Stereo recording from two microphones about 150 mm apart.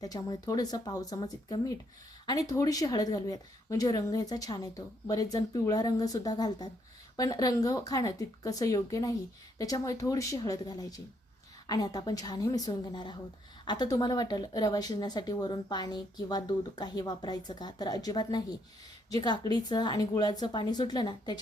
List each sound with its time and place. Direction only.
0.0 s speech: 25° left (ahead or behind)